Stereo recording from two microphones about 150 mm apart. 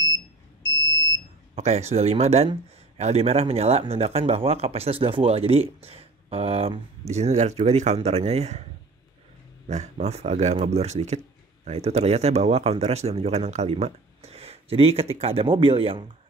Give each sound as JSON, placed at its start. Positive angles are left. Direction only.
{"t": 1.5, "sound": "speech", "side_deg": -45}
{"t": 9.7, "sound": "speech", "side_deg": -50}